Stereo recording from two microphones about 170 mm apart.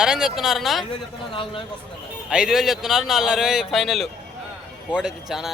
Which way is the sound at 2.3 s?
5° right (ahead or behind).